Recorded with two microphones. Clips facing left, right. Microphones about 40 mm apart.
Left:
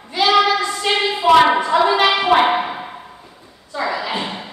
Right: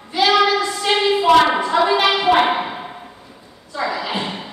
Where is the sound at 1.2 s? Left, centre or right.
Centre.